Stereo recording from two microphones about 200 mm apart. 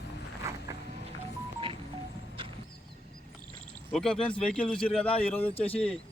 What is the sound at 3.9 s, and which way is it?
A man's voice, 5° left (ahead or behind).